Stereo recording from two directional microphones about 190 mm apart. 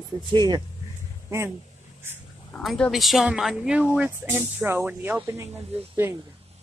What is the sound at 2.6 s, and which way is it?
Speech, centre (ahead or behind).